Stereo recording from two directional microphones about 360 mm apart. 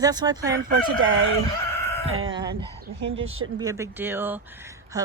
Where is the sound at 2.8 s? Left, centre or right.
Right.